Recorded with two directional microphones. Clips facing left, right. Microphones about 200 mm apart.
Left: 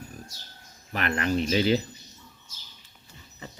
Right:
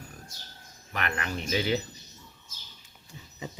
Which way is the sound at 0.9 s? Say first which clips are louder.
Left 7 dB; 35° left (ahead or behind).